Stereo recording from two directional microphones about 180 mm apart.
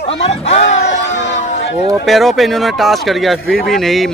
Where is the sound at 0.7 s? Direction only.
90° left.